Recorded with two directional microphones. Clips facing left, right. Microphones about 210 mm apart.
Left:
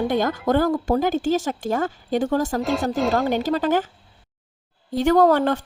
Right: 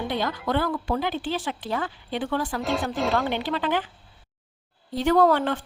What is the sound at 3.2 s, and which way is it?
Speech, 40° left (ahead or behind).